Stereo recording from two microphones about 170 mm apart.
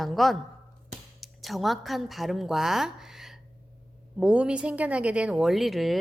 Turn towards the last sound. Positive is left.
turn(degrees=0)  # may be behind; listen again after turning